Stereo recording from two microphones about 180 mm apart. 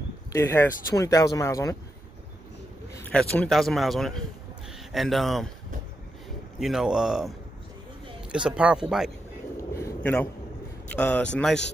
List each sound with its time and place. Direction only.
0.3 s speech: 15° left (ahead or behind)
3.1 s speech: 5° left (ahead or behind)
6.6 s speech: 5° right (ahead or behind)
9.8 s a sound: 10° left (ahead or behind)
10.9 s speech: 5° left (ahead or behind)